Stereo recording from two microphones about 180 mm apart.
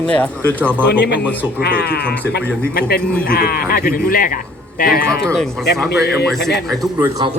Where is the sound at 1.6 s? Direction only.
65° left (ahead or behind).